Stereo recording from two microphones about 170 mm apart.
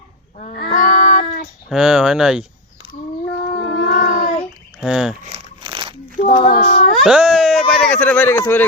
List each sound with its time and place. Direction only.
0.3 s child singing: 50° left (ahead or behind)
1.7 s speech: 5° right (ahead or behind)
3.3 s child singing: 50° left (ahead or behind)
4.8 s speech: 5° right (ahead or behind)
5.3 s crumpling: 30° right (ahead or behind)
6.2 s speech: 35° left (ahead or behind)
7.0 s speech: 5° right (ahead or behind)
7.9 s a man's voice: 10° left (ahead or behind)